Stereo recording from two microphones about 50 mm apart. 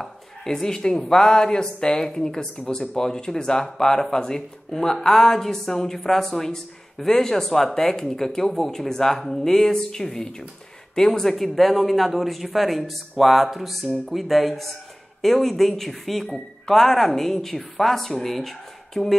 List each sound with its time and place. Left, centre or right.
0.0 s a woman's voice: centre